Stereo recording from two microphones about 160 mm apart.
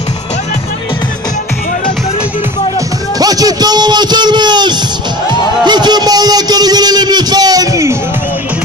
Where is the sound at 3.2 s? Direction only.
25° right (ahead or behind).